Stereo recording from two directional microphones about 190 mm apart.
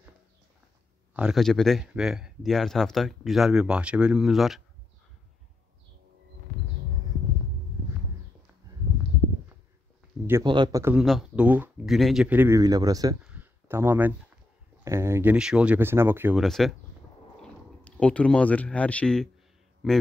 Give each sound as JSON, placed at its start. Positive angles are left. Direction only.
{"t": 1.1, "sound": "speech", "side_deg": 0}
{"t": 10.4, "sound": "speech", "side_deg": -25}
{"t": 13.2, "sound": "a sound", "side_deg": -10}
{"t": 14.9, "sound": "speech", "side_deg": -15}
{"t": 16.4, "sound": "speech", "side_deg": 0}